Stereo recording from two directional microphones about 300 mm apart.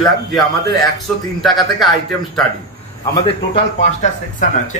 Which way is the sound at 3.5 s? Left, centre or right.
Left.